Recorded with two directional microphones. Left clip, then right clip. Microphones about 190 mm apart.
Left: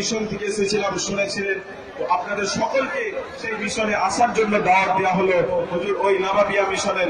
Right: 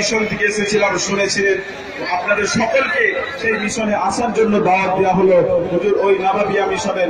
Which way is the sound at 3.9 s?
40° left (ahead or behind).